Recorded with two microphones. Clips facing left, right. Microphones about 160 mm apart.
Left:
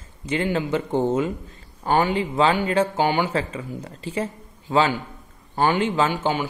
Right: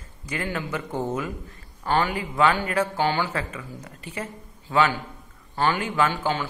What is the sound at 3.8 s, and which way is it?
A man's voice, 30° left (ahead or behind).